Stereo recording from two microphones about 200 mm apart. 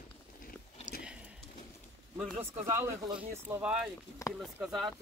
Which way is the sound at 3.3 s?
10° right (ahead or behind).